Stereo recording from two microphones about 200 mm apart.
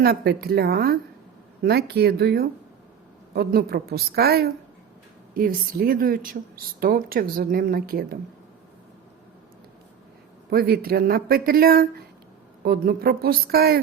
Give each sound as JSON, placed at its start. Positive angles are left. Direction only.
{"t": 0.0, "sound": "a woman's voice", "side_deg": -50}
{"t": 10.5, "sound": "a woman's voice", "side_deg": -50}